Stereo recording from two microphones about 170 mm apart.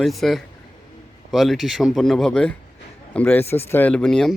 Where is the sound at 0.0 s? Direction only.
Centre (ahead or behind).